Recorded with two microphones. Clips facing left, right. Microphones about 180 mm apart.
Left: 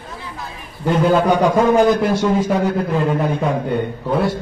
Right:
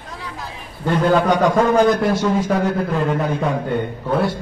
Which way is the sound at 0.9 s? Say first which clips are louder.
Left 1 dB; centre (ahead or behind).